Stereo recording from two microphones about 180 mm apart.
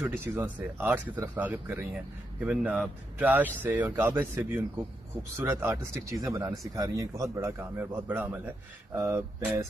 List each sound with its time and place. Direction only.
0.2 s speech: 10° right (ahead or behind)